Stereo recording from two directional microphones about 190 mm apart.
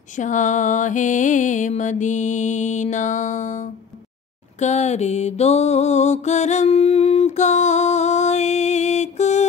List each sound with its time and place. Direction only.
0.2 s music: 40° left (ahead or behind)
4.6 s mantra: 35° left (ahead or behind)